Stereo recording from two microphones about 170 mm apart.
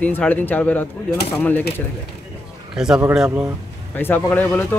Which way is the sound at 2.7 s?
5° right (ahead or behind).